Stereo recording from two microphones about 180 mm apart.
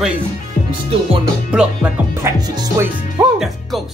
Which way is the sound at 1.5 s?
5° right (ahead or behind).